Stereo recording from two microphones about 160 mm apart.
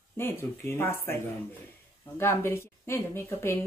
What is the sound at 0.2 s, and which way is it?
Speech, 15° left (ahead or behind).